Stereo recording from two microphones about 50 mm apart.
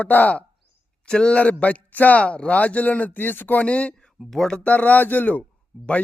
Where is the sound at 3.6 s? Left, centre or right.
Left.